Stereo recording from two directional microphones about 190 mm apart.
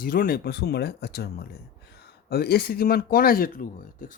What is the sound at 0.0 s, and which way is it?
Speech, 50° left (ahead or behind).